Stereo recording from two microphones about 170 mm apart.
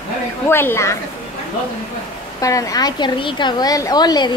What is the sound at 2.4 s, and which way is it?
A woman's voice, 20° left (ahead or behind).